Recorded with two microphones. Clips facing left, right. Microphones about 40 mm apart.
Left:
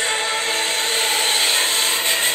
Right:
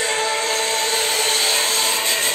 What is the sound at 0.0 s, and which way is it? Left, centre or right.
Choir, left.